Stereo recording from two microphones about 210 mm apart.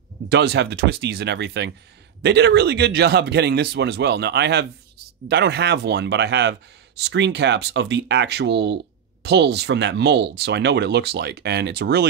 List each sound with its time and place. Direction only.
0.3 s speech: 50° right (ahead or behind)